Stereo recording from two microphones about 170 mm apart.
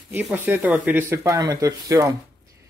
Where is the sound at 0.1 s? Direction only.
10° right (ahead or behind).